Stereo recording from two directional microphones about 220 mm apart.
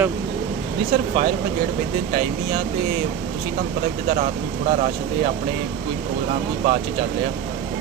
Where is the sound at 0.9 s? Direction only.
30° right (ahead or behind).